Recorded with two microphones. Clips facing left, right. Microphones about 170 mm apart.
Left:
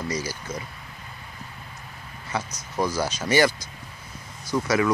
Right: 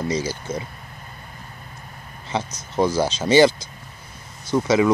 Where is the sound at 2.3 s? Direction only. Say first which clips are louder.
Right 5 dB; 25° right (ahead or behind).